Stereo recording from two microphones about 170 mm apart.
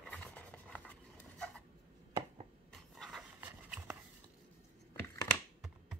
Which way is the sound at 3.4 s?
10° right (ahead or behind).